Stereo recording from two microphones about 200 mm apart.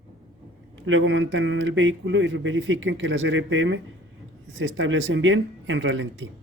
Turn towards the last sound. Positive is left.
turn(degrees=-70)  # may be behind; listen again after turning